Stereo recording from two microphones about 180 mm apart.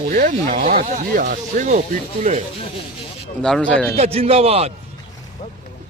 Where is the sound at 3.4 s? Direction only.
5° left (ahead or behind).